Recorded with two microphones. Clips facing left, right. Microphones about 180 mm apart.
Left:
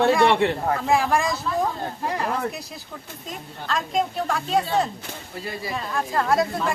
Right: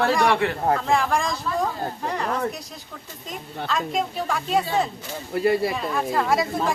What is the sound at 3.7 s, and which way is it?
Speech, centre (ahead or behind).